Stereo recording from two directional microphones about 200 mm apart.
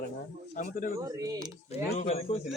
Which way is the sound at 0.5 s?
40° left (ahead or behind).